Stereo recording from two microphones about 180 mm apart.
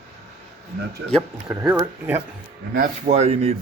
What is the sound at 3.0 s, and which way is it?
Speech, 35° right (ahead or behind).